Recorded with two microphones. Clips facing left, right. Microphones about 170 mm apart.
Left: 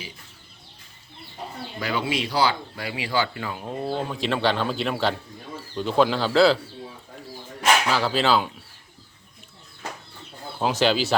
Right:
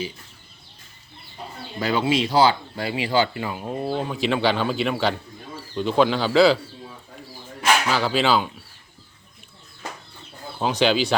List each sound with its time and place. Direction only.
1.8 s speech: 30° right (ahead or behind)
3.5 s a man's voice: 10° right (ahead or behind)
7.9 s a man's voice: centre (ahead or behind)
10.6 s a man's voice: centre (ahead or behind)